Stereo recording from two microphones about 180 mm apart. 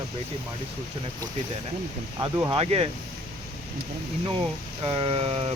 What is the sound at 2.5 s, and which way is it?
Speech, 35° right (ahead or behind).